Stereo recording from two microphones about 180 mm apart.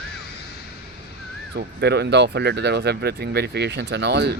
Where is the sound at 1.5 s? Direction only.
65° right (ahead or behind).